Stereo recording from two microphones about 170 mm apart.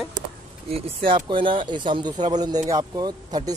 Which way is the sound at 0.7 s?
30° right (ahead or behind).